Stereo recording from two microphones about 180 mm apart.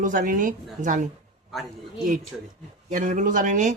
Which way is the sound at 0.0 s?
45° right (ahead or behind).